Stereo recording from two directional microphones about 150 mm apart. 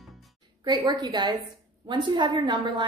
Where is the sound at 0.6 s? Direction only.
30° right (ahead or behind).